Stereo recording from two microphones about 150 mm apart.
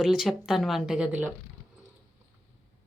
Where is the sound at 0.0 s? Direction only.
5° right (ahead or behind).